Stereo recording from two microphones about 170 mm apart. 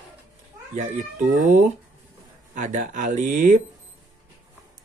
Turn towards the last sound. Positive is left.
turn(degrees=-50)  # may be behind; listen again after turning